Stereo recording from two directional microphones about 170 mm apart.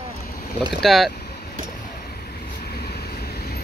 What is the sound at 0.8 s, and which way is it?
Speech, centre (ahead or behind).